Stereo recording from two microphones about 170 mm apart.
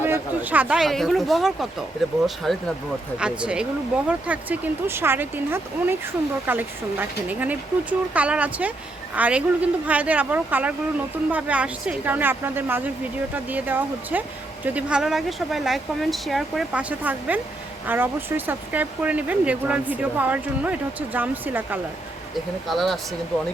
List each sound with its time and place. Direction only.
0.0 s speech: 10° right (ahead or behind)
22.7 s speech: centre (ahead or behind)